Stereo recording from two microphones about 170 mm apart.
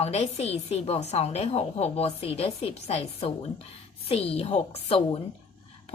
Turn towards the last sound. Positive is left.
turn(degrees=35)  # may be behind; listen again after turning